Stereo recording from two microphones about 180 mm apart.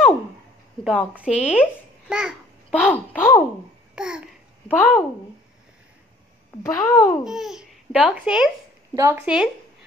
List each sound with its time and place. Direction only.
0.8 s a child's voice: 5° right (ahead or behind)
2.7 s speech: 10° left (ahead or behind)
3.9 s babbling: 5° right (ahead or behind)
4.6 s speech: 10° left (ahead or behind)
6.6 s speech: 15° left (ahead or behind)
7.2 s speech: centre (ahead or behind)